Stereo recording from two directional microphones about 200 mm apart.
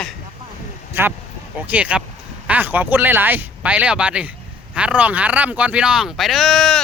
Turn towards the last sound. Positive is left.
turn(degrees=0)  # may be behind; listen again after turning